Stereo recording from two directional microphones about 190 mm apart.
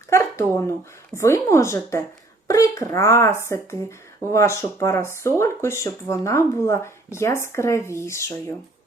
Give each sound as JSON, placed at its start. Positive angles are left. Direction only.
{"t": 0.1, "sound": "speech", "side_deg": 15}